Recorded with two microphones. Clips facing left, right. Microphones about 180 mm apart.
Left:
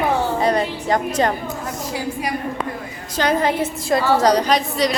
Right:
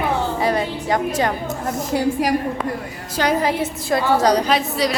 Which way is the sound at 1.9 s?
50° right (ahead or behind).